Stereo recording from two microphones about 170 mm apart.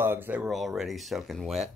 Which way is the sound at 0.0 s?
10° right (ahead or behind).